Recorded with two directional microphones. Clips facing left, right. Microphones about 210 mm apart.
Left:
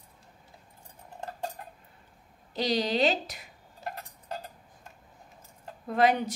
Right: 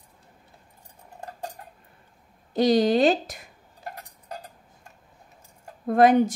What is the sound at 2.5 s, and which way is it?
Speech, 50° right (ahead or behind).